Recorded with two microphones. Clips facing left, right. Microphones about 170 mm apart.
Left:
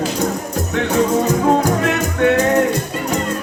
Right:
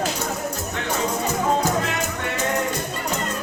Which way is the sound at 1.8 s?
60° left (ahead or behind).